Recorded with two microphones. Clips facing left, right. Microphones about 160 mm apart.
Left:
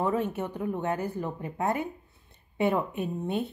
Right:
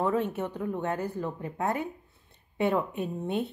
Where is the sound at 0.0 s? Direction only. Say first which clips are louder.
Even; 5° left (ahead or behind).